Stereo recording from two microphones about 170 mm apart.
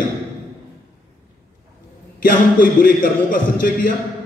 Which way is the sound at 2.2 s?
55° left (ahead or behind).